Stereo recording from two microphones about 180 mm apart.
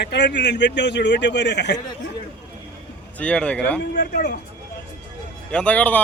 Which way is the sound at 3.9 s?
55° left (ahead or behind).